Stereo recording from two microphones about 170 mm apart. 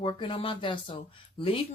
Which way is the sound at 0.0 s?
30° left (ahead or behind).